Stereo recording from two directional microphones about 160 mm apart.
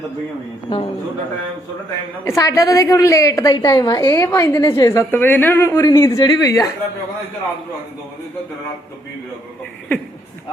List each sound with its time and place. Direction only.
0.7 s a woman's voice: 30° left (ahead or behind)
2.2 s a woman's voice: 20° left (ahead or behind)